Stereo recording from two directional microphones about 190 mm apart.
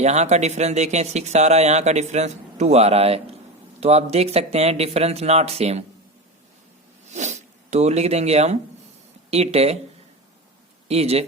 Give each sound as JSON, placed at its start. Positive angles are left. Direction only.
{"t": 0.0, "sound": "speech", "side_deg": -35}
{"t": 7.1, "sound": "speech", "side_deg": -40}
{"t": 10.8, "sound": "speech", "side_deg": -35}